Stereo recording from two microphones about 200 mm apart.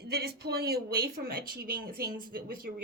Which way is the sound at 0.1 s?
55° right (ahead or behind).